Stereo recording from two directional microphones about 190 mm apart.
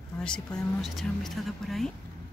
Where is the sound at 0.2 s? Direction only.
5° left (ahead or behind).